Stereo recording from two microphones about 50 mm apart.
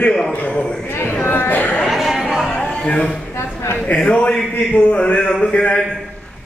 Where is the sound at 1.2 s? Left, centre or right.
Left.